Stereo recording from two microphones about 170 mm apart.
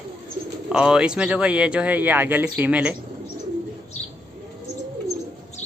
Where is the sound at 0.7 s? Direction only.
5° right (ahead or behind).